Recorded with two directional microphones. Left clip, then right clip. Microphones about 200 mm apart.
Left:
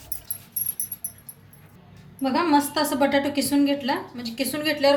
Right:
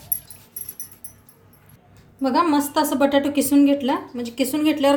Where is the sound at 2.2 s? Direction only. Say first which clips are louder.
Right 2 dB; 45° right (ahead or behind).